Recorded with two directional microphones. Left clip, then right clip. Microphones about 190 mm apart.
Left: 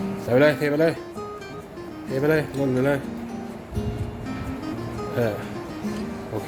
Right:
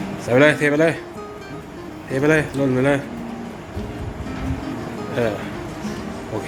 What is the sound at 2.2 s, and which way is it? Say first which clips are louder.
Speech: right 4 dB; 15° left (ahead or behind).